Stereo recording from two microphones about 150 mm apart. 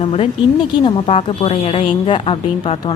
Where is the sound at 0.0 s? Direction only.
40° left (ahead or behind).